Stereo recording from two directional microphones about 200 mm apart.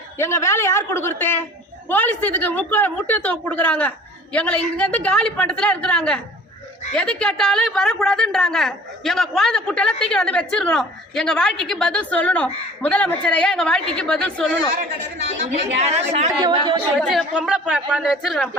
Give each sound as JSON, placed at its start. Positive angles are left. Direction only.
{"t": 0.2, "sound": "a woman's voice", "side_deg": 10}
{"t": 15.8, "sound": "speech", "side_deg": -35}
{"t": 16.4, "sound": "speech", "side_deg": -25}
{"t": 17.0, "sound": "a woman's voice", "side_deg": 0}